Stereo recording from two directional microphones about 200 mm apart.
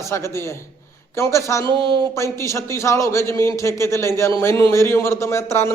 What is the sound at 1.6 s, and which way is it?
Speech, 25° right (ahead or behind).